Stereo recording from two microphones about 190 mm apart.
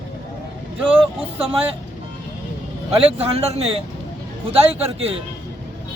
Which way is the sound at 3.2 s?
30° right (ahead or behind).